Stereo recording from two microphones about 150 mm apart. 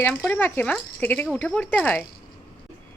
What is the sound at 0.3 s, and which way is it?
Speech, 10° left (ahead or behind).